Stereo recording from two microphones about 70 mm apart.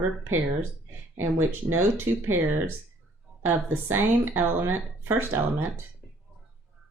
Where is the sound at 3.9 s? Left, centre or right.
Right.